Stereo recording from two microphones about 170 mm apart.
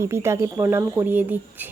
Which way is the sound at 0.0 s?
15° right (ahead or behind).